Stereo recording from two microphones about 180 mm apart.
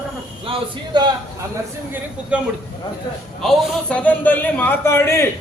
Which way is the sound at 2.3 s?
5° right (ahead or behind).